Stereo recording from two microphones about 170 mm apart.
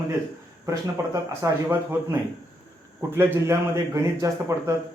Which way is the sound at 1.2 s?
15° right (ahead or behind).